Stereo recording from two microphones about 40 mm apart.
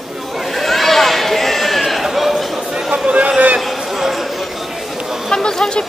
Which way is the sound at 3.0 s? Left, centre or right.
Right.